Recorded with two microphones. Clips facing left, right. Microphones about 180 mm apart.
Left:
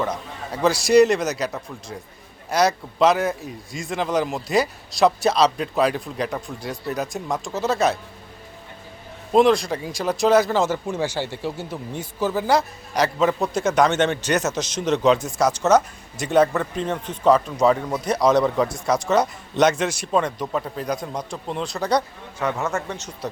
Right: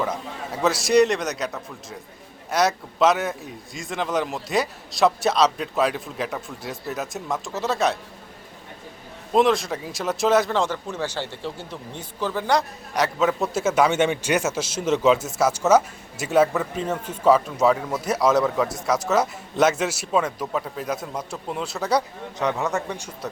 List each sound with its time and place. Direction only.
0.5 s speech: centre (ahead or behind)
9.3 s a man's voice: centre (ahead or behind)
22.4 s a man's voice: 15° right (ahead or behind)